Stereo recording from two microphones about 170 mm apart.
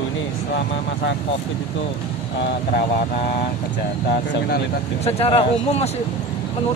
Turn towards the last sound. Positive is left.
turn(degrees=35)  # may be behind; listen again after turning